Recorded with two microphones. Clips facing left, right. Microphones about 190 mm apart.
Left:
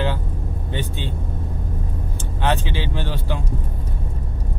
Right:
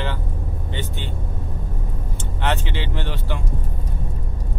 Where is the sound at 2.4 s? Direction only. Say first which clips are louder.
Left 2 dB; 15° left (ahead or behind).